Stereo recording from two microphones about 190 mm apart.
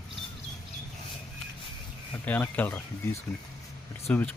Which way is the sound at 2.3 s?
10° left (ahead or behind).